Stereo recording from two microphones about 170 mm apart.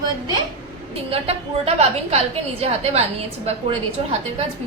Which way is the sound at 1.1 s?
35° right (ahead or behind).